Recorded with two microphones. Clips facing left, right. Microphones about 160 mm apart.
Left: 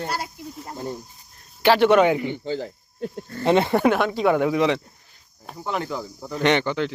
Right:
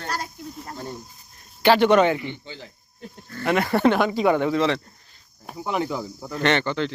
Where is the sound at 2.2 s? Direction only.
40° left (ahead or behind).